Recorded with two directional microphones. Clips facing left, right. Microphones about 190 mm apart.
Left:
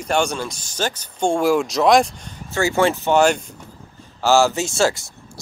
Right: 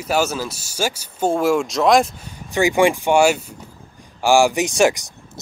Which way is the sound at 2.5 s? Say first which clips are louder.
Right 2 dB; 15° right (ahead or behind).